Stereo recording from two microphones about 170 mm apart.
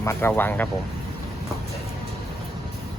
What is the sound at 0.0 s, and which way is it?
Speech, 15° left (ahead or behind).